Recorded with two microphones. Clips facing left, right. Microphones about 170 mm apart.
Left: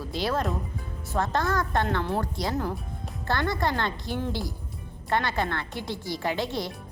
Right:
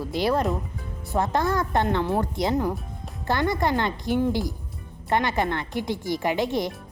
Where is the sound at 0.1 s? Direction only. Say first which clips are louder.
Right 4 dB; 15° right (ahead or behind).